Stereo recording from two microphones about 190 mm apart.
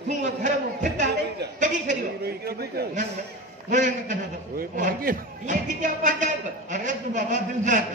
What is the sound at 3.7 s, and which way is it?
A man's voice, 40° right (ahead or behind).